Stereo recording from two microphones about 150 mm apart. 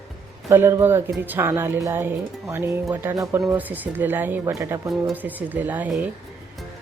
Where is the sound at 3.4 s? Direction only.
10° right (ahead or behind).